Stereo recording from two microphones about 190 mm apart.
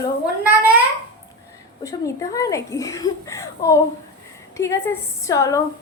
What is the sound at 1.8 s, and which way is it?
Speech, 15° left (ahead or behind).